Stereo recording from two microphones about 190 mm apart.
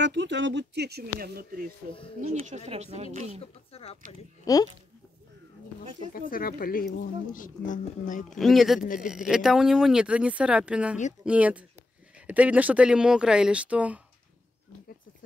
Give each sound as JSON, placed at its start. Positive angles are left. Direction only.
{"t": 0.0, "sound": "speech", "side_deg": -70}
{"t": 2.2, "sound": "speech", "side_deg": -35}
{"t": 3.7, "sound": "speech", "side_deg": 30}
{"t": 4.5, "sound": "speech", "side_deg": 20}
{"t": 5.9, "sound": "speech", "side_deg": 50}
{"t": 8.3, "sound": "speech", "side_deg": 0}